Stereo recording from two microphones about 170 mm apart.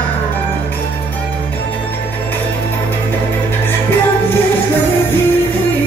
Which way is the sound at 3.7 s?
10° left (ahead or behind).